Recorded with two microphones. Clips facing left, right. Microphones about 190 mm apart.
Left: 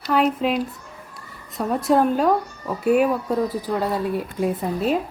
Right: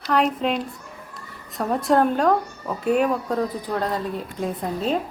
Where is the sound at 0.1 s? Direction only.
Centre (ahead or behind).